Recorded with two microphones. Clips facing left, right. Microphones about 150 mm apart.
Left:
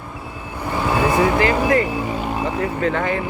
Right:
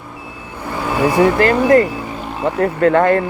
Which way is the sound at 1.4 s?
45° right (ahead or behind).